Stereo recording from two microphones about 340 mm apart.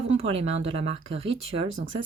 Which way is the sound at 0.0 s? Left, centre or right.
Centre.